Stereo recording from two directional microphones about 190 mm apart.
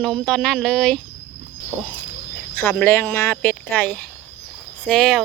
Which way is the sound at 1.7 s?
10° right (ahead or behind).